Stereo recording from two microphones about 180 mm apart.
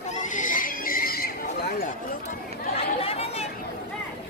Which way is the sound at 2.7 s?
35° left (ahead or behind).